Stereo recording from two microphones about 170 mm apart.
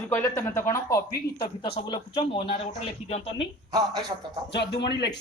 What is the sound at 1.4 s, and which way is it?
Speech, 30° left (ahead or behind).